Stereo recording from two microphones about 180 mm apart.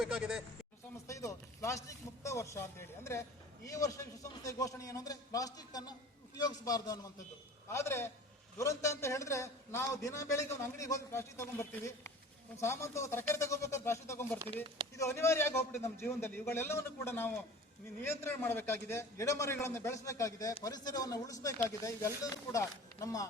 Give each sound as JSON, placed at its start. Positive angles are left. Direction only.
{"t": 0.0, "sound": "speech", "side_deg": 0}
{"t": 1.0, "sound": "a man's voice", "side_deg": 15}